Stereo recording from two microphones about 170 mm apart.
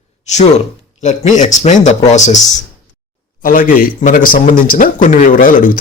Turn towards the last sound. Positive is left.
turn(degrees=50)  # may be behind; listen again after turning